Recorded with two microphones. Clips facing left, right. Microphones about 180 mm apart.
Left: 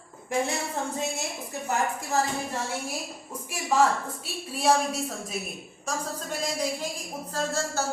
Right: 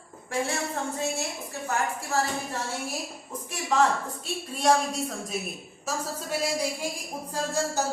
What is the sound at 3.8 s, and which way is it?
A woman's voice, 5° left (ahead or behind).